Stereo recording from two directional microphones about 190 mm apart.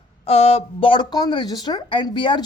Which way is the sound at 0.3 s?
30° left (ahead or behind).